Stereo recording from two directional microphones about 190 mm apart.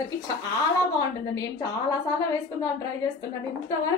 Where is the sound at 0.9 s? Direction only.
20° left (ahead or behind).